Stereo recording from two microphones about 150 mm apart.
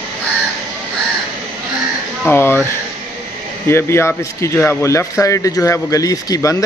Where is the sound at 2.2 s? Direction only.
15° left (ahead or behind).